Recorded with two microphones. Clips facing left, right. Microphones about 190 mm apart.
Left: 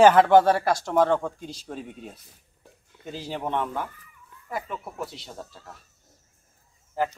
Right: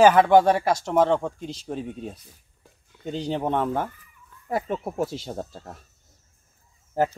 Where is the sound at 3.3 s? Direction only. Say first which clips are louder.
Right 3 dB; 35° right (ahead or behind).